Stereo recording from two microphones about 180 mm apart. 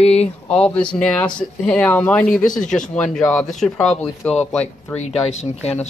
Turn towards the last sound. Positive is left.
turn(degrees=40)  # may be behind; listen again after turning